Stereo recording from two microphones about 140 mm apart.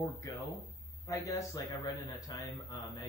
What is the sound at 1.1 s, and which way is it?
Speech, 20° left (ahead or behind).